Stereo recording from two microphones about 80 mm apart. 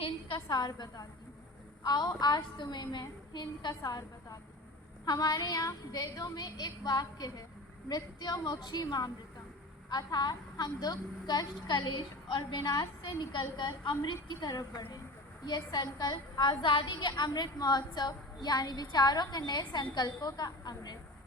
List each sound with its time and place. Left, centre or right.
0.5 s a woman's voice: left